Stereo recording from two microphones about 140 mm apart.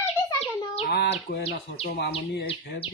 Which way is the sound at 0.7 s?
45° left (ahead or behind).